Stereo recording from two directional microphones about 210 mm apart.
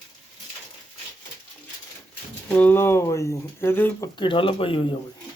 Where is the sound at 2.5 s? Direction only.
10° left (ahead or behind).